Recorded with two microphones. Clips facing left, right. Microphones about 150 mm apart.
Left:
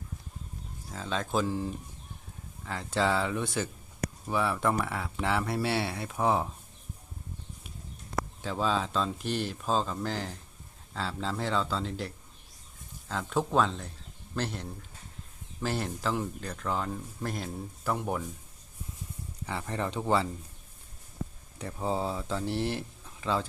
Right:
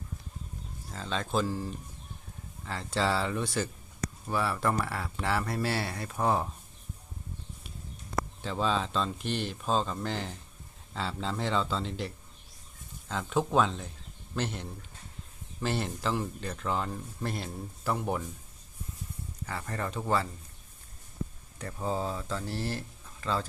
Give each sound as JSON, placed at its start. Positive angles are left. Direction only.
{"t": 0.9, "sound": "speech", "side_deg": 5}
{"t": 2.6, "sound": "speech", "side_deg": 0}
{"t": 8.4, "sound": "speech", "side_deg": 5}
{"t": 19.5, "sound": "speech", "side_deg": 15}
{"t": 21.6, "sound": "speech", "side_deg": 10}